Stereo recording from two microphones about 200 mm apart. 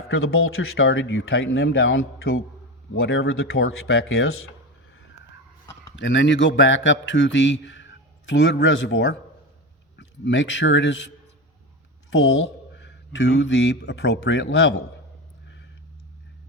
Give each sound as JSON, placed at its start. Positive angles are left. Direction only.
{"t": 0.1, "sound": "speech", "side_deg": 90}
{"t": 6.0, "sound": "a man's voice", "side_deg": 65}
{"t": 12.7, "sound": "speech", "side_deg": 60}